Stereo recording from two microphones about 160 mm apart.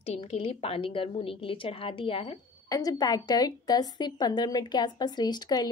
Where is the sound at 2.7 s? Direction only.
25° left (ahead or behind).